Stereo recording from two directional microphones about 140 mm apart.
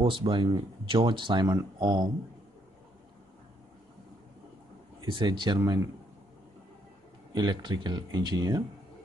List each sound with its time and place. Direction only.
0.0 s speech: 40° right (ahead or behind)
5.1 s speech: 30° right (ahead or behind)
7.3 s speech: 30° right (ahead or behind)